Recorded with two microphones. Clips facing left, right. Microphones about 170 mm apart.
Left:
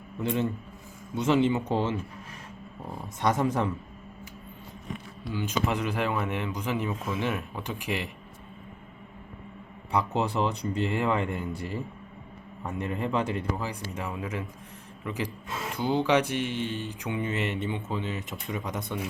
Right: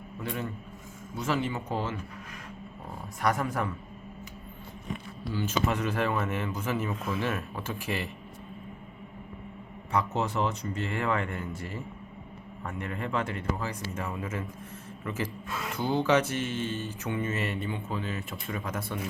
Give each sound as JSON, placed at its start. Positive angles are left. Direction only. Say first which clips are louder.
{"t": 0.2, "sound": "speech", "louder": "left 7 dB", "side_deg": 20}
{"t": 3.2, "sound": "speech", "louder": "left 3 dB", "side_deg": 20}
{"t": 5.2, "sound": "speech", "louder": "even", "side_deg": 15}
{"t": 9.9, "sound": "speech", "louder": "left 2 dB", "side_deg": 15}